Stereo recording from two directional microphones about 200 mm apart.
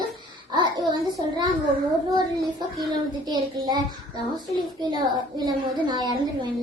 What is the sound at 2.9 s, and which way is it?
A child's voice, 20° right (ahead or behind).